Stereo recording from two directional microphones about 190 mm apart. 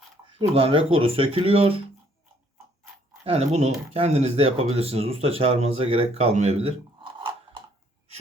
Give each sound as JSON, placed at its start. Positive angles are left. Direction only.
{"t": 0.3, "sound": "speech", "side_deg": -30}
{"t": 3.2, "sound": "speech", "side_deg": -35}